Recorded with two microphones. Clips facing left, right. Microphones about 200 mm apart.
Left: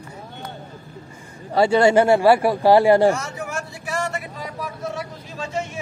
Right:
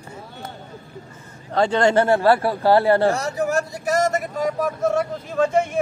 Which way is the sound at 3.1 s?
35° right (ahead or behind).